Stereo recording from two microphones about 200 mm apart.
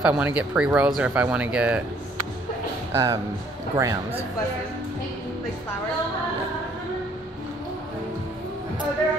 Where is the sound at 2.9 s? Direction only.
15° right (ahead or behind).